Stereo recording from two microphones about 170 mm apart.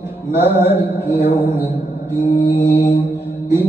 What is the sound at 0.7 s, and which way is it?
Mantra, 10° right (ahead or behind).